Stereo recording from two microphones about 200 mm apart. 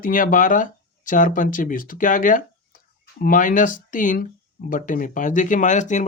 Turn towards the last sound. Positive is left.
turn(degrees=35)  # may be behind; listen again after turning